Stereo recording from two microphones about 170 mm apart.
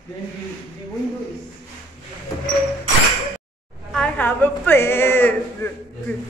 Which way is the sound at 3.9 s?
5° left (ahead or behind).